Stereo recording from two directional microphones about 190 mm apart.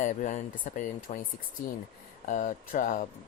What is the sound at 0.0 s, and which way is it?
Speech, 40° left (ahead or behind).